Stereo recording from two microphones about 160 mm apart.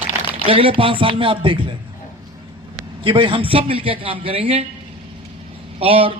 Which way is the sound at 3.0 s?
35° right (ahead or behind).